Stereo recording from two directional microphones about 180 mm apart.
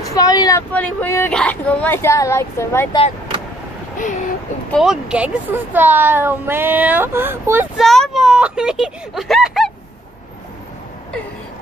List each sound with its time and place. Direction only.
0.0 s speech: 20° left (ahead or behind)
4.6 s speech: centre (ahead or behind)
7.7 s a sound: centre (ahead or behind)